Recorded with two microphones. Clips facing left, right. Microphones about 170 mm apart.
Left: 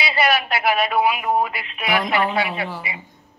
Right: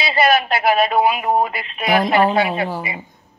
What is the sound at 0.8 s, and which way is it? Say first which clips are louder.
Speech: right 3 dB; 30° right (ahead or behind).